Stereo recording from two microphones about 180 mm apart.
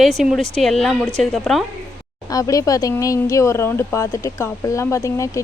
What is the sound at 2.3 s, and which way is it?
Speech, 20° left (ahead or behind).